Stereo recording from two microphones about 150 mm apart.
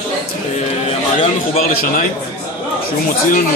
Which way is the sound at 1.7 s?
90° left.